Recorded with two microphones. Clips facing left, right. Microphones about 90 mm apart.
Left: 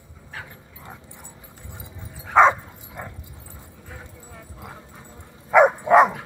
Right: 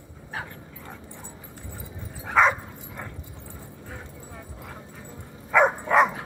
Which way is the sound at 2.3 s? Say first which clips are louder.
Left 5 dB; 30° left (ahead or behind).